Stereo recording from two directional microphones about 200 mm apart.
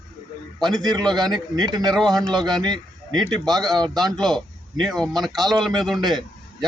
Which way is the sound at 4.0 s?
Centre (ahead or behind).